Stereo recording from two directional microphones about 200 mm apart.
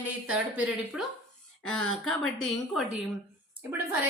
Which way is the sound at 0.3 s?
5° right (ahead or behind).